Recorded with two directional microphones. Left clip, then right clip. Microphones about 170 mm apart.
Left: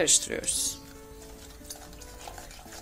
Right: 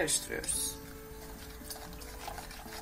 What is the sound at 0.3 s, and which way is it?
Speech, 55° left (ahead or behind).